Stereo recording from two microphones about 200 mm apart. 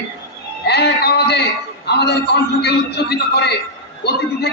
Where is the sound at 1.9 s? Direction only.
55° left (ahead or behind).